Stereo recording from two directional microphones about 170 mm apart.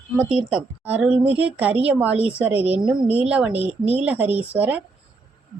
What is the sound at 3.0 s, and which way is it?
A woman's voice, 10° right (ahead or behind).